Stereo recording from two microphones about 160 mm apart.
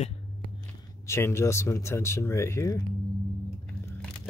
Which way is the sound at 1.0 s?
15° left (ahead or behind).